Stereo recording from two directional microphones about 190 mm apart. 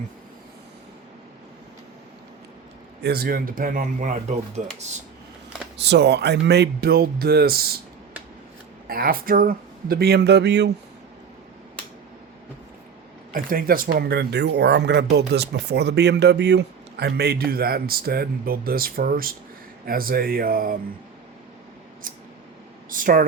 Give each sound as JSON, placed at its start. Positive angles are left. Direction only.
{"t": 3.0, "sound": "speech", "side_deg": -55}
{"t": 5.8, "sound": "speech", "side_deg": -60}
{"t": 8.9, "sound": "speech", "side_deg": -50}
{"t": 13.3, "sound": "speech", "side_deg": -45}
{"t": 22.0, "sound": "scissors", "side_deg": -45}
{"t": 22.9, "sound": "speech", "side_deg": -45}